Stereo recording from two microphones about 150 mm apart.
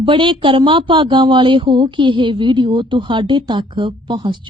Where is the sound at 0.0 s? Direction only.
35° right (ahead or behind).